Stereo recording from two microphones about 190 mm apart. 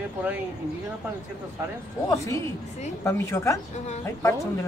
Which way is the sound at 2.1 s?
15° left (ahead or behind).